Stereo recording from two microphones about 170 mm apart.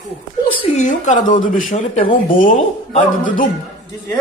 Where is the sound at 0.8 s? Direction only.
45° left (ahead or behind).